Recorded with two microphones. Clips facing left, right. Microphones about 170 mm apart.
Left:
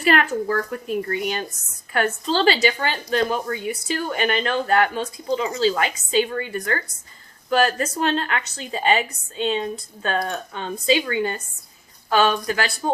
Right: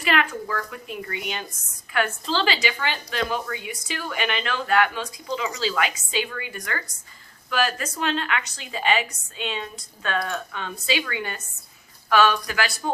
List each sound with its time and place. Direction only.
0.0 s speech: 40° left (ahead or behind)